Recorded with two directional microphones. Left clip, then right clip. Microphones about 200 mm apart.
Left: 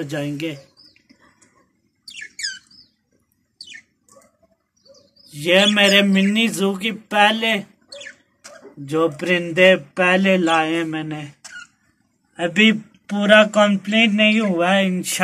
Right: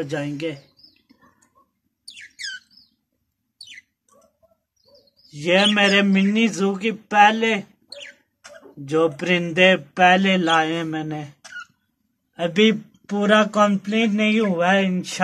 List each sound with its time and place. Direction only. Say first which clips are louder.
0.1 s speech: left 1 dB; 25° right (ahead or behind)
5.4 s speech: left 2 dB; 25° right (ahead or behind)
8.8 s speech: even; 35° right (ahead or behind)
12.4 s speech: left 2 dB; 55° right (ahead or behind); by 15.2 s 25° right (ahead or behind)